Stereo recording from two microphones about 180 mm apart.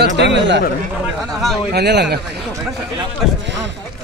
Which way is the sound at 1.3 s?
Centre (ahead or behind).